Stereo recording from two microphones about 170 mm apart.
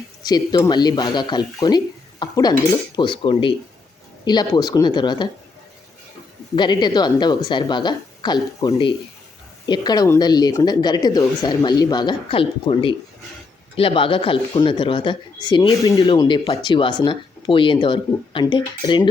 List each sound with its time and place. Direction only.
0.2 s speech: 25° left (ahead or behind)
6.6 s speech: 25° left (ahead or behind)